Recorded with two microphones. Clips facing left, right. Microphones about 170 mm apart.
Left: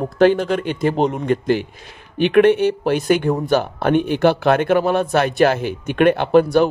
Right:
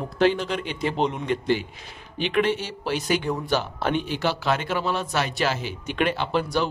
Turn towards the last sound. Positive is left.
turn(degrees=55)  # may be behind; listen again after turning